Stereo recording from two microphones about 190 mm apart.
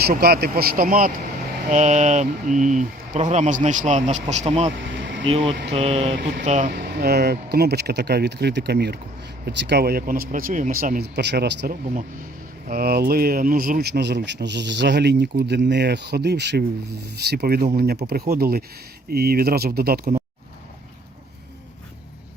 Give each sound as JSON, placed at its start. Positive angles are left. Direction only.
{"t": 0.0, "sound": "speech", "side_deg": -55}
{"t": 1.7, "sound": "speech", "side_deg": -40}
{"t": 4.9, "sound": "a sound", "side_deg": -70}
{"t": 5.2, "sound": "speech", "side_deg": -30}
{"t": 6.1, "sound": "speech", "side_deg": -60}
{"t": 6.4, "sound": "speech", "side_deg": -40}
{"t": 6.7, "sound": "speech", "side_deg": -55}